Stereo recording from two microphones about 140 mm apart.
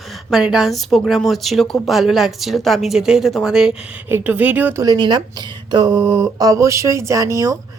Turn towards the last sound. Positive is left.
turn(degrees=-25)  # may be behind; listen again after turning